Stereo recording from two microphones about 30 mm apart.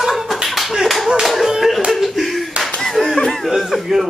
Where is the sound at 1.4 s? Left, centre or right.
Centre.